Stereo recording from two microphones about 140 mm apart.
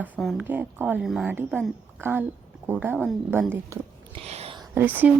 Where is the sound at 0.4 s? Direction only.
15° right (ahead or behind).